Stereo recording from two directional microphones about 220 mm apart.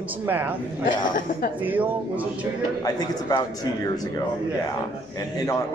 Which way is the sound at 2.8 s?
15° left (ahead or behind).